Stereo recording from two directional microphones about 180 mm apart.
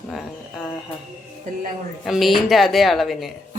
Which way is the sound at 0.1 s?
Centre (ahead or behind).